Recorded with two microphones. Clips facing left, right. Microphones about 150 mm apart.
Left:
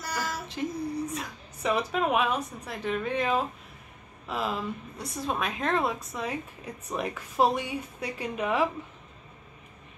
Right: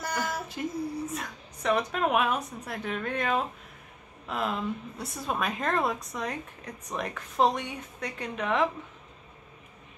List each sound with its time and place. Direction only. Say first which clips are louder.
0.5 s a woman's voice: left 1 dB; 5° right (ahead or behind)